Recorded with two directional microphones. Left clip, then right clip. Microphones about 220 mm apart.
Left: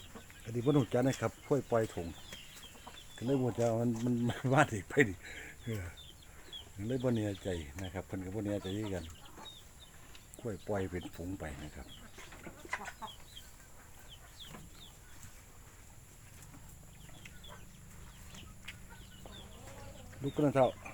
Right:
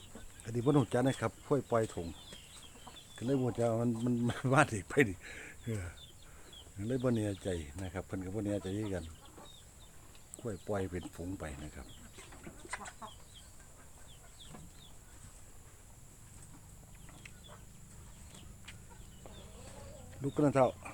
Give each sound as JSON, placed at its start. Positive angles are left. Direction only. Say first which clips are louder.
{"t": 0.4, "sound": "speech", "louder": "right 1 dB", "side_deg": -5}
{"t": 3.2, "sound": "speech", "louder": "even", "side_deg": 5}
{"t": 10.4, "sound": "speech", "louder": "even", "side_deg": 5}
{"t": 12.6, "sound": "chicken", "louder": "left 3 dB", "side_deg": 30}
{"t": 20.2, "sound": "speech", "louder": "even", "side_deg": -5}